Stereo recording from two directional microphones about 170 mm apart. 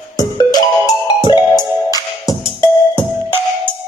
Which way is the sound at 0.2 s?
20° left (ahead or behind).